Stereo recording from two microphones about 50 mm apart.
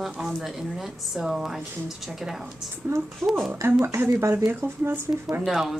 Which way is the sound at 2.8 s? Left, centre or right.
Right.